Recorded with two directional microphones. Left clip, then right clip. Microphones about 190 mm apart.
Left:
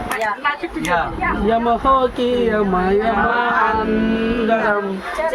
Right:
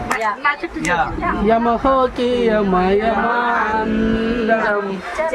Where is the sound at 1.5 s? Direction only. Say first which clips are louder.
Even; 65° right (ahead or behind).